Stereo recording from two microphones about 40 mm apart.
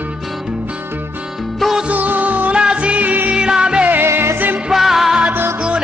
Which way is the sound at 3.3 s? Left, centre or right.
Right.